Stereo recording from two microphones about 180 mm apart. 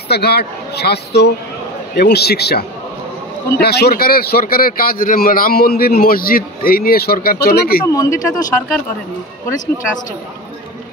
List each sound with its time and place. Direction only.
0.1 s speech: 65° left (ahead or behind)
7.8 s speech: 20° left (ahead or behind)